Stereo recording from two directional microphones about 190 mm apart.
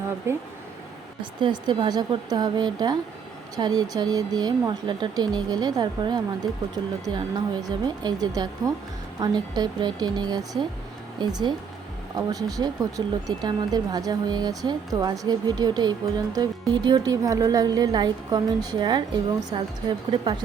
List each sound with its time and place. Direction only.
0.3 s speech: 15° right (ahead or behind)